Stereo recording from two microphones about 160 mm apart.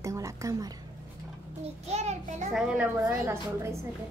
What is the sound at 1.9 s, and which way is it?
Speech, 45° right (ahead or behind).